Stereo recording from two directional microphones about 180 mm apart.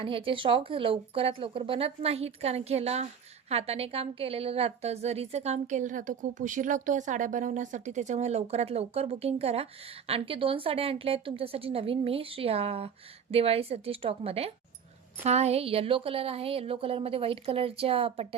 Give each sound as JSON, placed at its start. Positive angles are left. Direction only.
{"t": 0.0, "sound": "a woman's voice", "side_deg": -30}